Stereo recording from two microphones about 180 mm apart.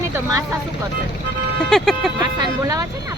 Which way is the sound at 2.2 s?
20° right (ahead or behind).